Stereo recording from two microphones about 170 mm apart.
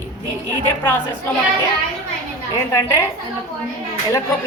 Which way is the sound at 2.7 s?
20° left (ahead or behind).